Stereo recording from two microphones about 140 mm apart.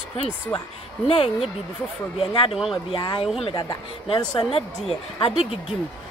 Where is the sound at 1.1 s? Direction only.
45° left (ahead or behind).